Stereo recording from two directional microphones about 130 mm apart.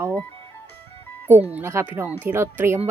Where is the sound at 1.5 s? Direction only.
20° right (ahead or behind).